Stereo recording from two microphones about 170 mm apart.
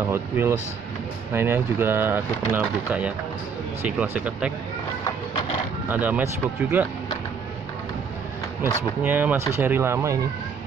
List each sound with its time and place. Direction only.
0.0 s speech: 15° right (ahead or behind)
5.9 s speech: 10° right (ahead or behind)
8.6 s speech: 10° right (ahead or behind)